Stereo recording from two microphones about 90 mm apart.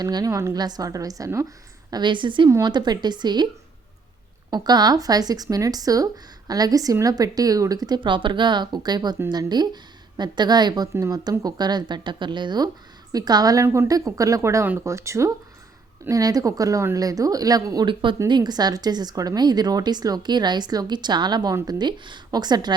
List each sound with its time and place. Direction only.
0.0 s speech: 45° right (ahead or behind)
0.3 s speech: 35° right (ahead or behind)
0.5 s speech: 50° right (ahead or behind)
1.9 s a woman's voice: 60° right (ahead or behind)
2.6 s speech: 50° right (ahead or behind)
4.5 s a woman's voice: 50° right (ahead or behind)
17.8 s a woman's voice: 65° right (ahead or behind)
18.3 s speech: 50° right (ahead or behind)